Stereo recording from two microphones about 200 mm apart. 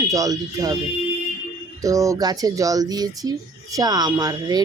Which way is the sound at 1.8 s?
15° right (ahead or behind).